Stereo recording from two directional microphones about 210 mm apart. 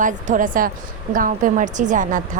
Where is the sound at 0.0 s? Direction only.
35° right (ahead or behind).